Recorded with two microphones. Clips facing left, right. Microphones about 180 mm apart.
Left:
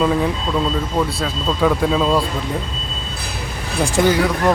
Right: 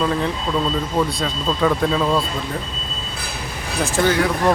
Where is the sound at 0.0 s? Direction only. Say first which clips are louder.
Left 3 dB; 10° left (ahead or behind).